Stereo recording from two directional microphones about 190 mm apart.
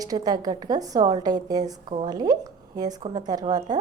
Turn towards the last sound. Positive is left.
turn(degrees=-20)  # may be behind; listen again after turning